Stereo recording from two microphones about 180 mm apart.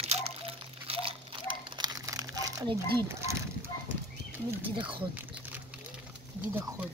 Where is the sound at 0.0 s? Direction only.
35° right (ahead or behind); by 3.3 s 15° right (ahead or behind).